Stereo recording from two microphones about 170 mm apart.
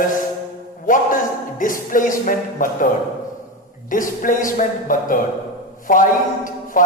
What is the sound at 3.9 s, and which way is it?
Speech, 50° left (ahead or behind).